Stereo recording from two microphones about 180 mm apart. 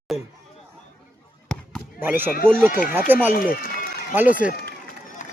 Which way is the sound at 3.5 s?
55° left (ahead or behind).